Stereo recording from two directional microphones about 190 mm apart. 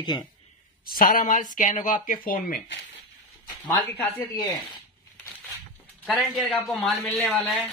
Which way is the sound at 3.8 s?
15° left (ahead or behind).